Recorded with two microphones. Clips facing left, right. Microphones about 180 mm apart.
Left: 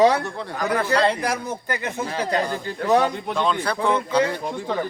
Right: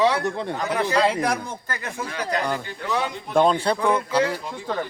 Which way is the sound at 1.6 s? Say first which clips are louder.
Left 4 dB; 20° left (ahead or behind).